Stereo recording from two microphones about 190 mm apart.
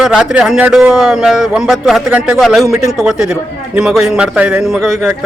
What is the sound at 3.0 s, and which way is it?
A man's voice, 5° right (ahead or behind).